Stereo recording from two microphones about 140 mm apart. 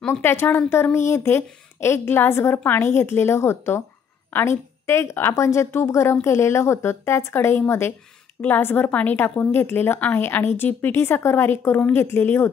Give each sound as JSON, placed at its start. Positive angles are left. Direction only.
{"t": 0.0, "sound": "a woman's voice", "side_deg": 15}